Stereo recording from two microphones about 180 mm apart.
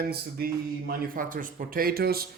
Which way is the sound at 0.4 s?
60° right (ahead or behind).